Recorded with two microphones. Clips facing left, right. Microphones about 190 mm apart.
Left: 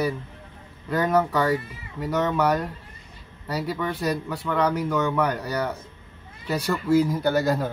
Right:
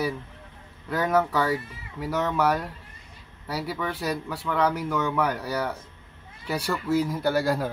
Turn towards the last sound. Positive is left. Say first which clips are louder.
# left 2 dB
turn(degrees=-5)  # may be behind; listen again after turning